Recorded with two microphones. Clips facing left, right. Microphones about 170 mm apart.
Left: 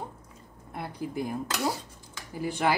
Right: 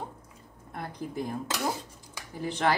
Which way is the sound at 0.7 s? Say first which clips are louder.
Left 2 dB; 5° left (ahead or behind).